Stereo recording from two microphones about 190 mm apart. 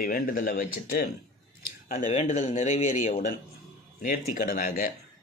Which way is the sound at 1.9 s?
40° left (ahead or behind).